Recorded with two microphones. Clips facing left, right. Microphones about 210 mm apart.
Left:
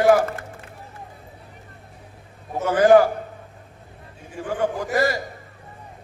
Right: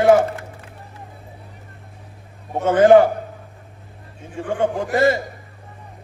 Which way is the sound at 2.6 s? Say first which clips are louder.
Right 3 dB; 25° right (ahead or behind).